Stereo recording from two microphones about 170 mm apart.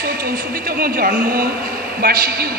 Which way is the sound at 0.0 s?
60° right (ahead or behind).